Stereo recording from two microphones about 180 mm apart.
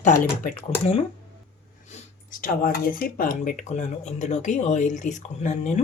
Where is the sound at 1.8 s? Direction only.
45° left (ahead or behind).